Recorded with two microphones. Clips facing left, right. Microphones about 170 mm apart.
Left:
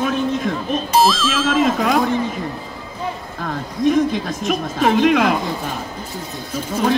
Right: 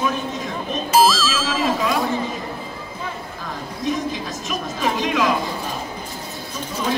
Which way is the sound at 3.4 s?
55° left (ahead or behind).